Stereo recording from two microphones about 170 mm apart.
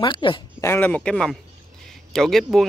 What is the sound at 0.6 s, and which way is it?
Speech, 10° left (ahead or behind).